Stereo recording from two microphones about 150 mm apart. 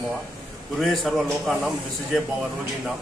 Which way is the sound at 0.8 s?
Centre (ahead or behind).